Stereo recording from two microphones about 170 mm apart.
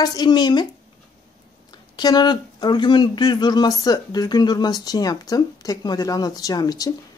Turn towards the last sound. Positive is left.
turn(degrees=20)  # may be behind; listen again after turning